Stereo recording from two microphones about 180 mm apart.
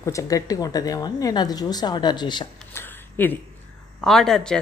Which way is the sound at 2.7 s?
10° left (ahead or behind).